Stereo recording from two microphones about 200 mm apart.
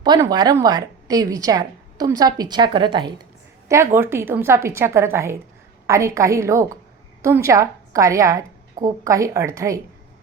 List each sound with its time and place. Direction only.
0.0 s a woman's voice: 20° right (ahead or behind)
3.7 s a woman's voice: 10° right (ahead or behind)